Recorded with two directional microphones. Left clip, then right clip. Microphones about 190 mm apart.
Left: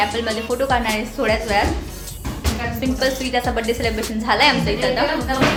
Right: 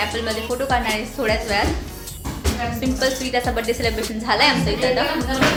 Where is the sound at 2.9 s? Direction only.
Centre (ahead or behind).